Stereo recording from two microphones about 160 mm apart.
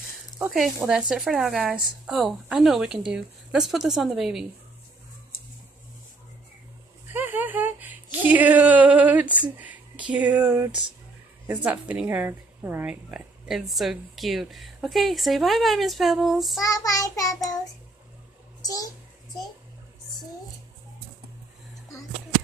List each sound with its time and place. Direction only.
0.4 s speech: centre (ahead or behind)
7.1 s speech: 10° right (ahead or behind)
16.6 s child singing: 20° left (ahead or behind)
18.6 s a sound: 20° left (ahead or behind)